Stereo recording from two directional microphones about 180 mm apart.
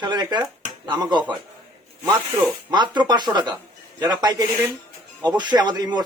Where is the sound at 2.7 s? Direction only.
25° right (ahead or behind).